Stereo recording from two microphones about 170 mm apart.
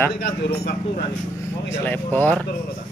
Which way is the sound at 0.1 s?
75° left (ahead or behind).